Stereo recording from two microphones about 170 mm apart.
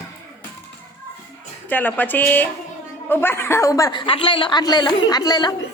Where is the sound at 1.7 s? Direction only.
10° left (ahead or behind).